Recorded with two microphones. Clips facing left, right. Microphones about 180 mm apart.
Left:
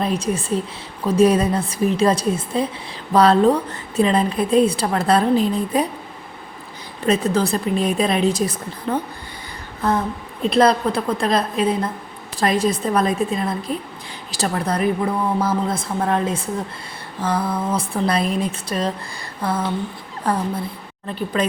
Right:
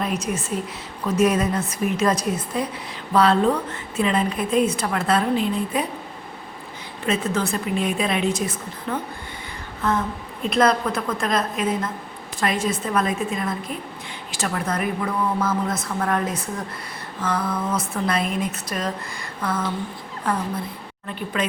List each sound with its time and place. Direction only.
0.0 s a woman's voice: 30° left (ahead or behind)
3.1 s a woman's voice: 40° left (ahead or behind)
7.0 s a woman's voice: 40° left (ahead or behind)